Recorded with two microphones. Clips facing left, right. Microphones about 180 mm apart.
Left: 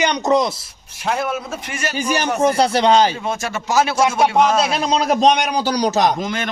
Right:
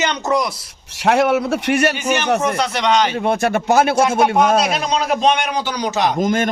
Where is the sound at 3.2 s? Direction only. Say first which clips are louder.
Right 7 dB; 60° right (ahead or behind).